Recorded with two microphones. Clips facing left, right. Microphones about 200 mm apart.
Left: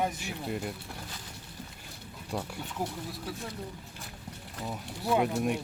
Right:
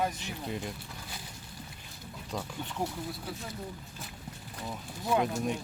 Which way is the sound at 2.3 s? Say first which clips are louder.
Left 1 dB; 10° left (ahead or behind).